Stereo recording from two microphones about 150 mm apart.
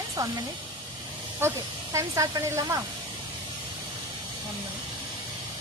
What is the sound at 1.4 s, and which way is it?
A woman's voice, 15° right (ahead or behind).